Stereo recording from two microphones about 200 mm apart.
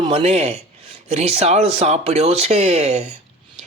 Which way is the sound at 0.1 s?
30° right (ahead or behind).